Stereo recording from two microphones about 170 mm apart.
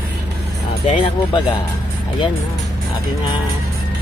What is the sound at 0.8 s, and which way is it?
Speech, 35° left (ahead or behind).